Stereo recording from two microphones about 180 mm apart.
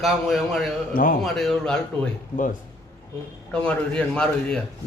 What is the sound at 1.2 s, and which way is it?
Speech, centre (ahead or behind).